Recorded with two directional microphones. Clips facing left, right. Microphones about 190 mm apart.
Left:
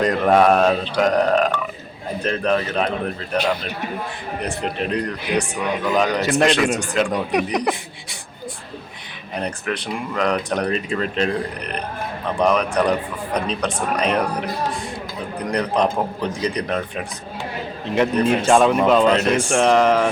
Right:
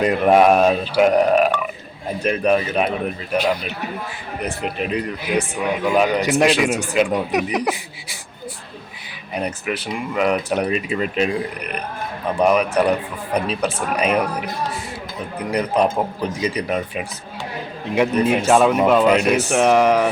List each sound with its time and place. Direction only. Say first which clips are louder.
0.0 s speech: right 1 dB; 10° right (ahead or behind)
9.3 s speech: right 1 dB; 10° right (ahead or behind)
15.4 s speech: right 1 dB; 5° right (ahead or behind)